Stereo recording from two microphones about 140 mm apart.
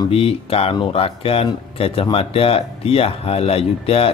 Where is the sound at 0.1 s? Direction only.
45° left (ahead or behind).